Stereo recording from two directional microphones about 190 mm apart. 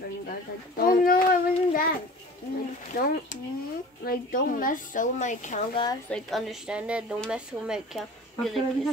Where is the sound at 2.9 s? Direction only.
45° left (ahead or behind).